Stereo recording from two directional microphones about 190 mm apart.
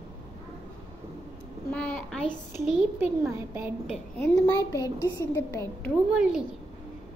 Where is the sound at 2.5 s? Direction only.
5° right (ahead or behind).